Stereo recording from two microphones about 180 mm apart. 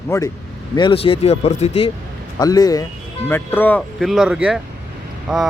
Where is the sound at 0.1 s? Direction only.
15° left (ahead or behind).